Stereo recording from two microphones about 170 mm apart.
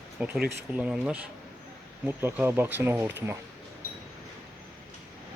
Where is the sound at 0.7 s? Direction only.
5° right (ahead or behind).